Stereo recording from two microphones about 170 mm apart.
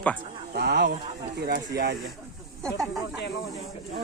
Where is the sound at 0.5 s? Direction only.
75° right (ahead or behind).